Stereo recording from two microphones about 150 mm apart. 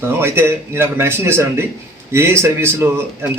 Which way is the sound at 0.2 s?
15° right (ahead or behind).